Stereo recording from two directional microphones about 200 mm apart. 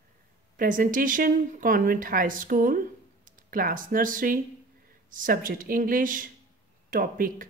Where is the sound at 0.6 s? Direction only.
40° right (ahead or behind).